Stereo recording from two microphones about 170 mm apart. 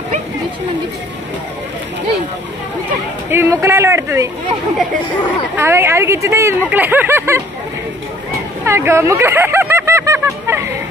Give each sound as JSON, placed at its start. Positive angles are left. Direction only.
{"t": 3.3, "sound": "speech", "side_deg": -15}
{"t": 5.6, "sound": "speech", "side_deg": -15}
{"t": 8.6, "sound": "a sound", "side_deg": -15}